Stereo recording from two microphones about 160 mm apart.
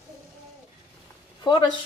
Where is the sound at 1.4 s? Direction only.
30° left (ahead or behind).